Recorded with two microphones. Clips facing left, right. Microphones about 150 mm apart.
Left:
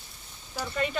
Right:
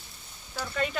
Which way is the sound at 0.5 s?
10° left (ahead or behind).